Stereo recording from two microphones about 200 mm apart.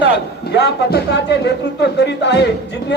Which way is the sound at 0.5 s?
55° left (ahead or behind).